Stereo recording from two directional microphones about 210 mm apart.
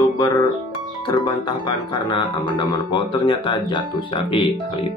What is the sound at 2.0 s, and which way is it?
Speech, 20° left (ahead or behind).